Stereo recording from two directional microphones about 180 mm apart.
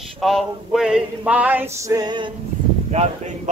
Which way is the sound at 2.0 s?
25° right (ahead or behind).